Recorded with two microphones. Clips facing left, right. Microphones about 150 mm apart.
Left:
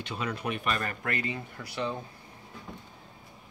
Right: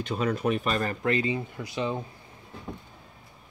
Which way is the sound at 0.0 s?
45° right (ahead or behind).